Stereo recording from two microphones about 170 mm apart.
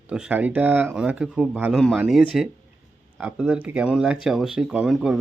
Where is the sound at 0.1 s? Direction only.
10° right (ahead or behind).